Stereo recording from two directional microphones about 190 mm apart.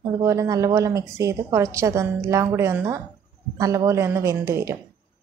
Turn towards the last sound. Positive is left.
turn(degrees=-15)  # may be behind; listen again after turning